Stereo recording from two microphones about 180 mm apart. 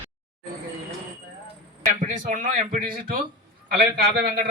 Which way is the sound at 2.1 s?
50° right (ahead or behind).